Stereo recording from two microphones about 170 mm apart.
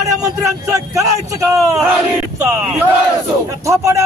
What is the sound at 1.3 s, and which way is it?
Battle cry, 20° right (ahead or behind).